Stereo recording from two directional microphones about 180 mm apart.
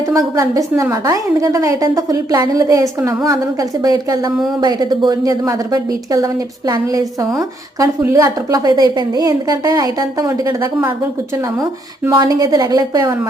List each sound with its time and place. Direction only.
0.1 s a woman's voice: 20° right (ahead or behind)
12.1 s a woman's voice: 25° right (ahead or behind)